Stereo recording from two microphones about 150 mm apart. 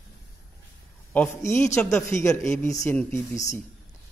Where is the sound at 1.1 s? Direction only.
15° left (ahead or behind).